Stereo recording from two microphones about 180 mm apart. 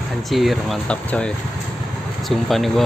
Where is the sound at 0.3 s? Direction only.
Centre (ahead or behind).